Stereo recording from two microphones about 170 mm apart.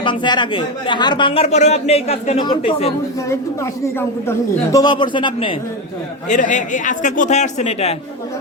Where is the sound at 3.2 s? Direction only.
15° left (ahead or behind).